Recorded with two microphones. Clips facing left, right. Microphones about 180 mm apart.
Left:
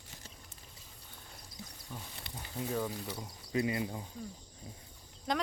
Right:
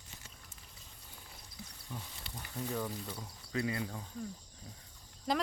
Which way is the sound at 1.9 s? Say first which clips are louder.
Right 1 dB; 5° left (ahead or behind).